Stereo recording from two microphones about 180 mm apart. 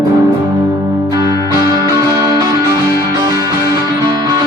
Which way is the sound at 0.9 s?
15° right (ahead or behind).